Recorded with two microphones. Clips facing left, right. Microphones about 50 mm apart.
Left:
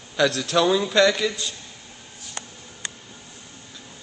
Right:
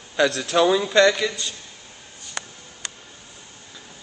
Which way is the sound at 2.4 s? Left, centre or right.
Right.